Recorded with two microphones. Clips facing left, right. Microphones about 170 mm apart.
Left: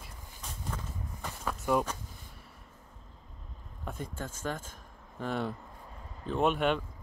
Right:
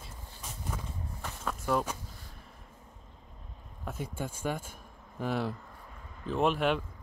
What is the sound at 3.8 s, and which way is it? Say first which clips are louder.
Speech: right 2 dB; 5° right (ahead or behind).